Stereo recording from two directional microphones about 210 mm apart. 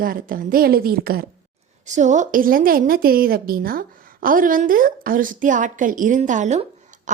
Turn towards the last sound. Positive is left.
turn(degrees=-35)  # may be behind; listen again after turning